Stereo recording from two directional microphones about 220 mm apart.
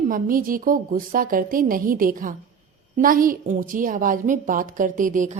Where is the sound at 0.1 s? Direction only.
40° right (ahead or behind).